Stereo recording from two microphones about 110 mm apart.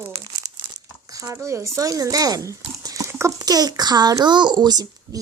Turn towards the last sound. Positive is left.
turn(degrees=-35)  # may be behind; listen again after turning